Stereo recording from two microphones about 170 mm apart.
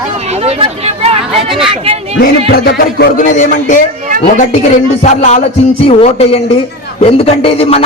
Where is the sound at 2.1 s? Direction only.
65° left (ahead or behind); by 3.8 s 50° left (ahead or behind).